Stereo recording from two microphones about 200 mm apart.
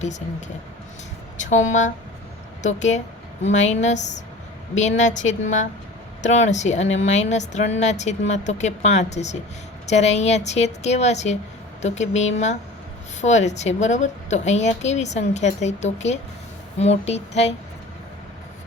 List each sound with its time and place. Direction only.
0.0 s a woman's voice: 35° left (ahead or behind)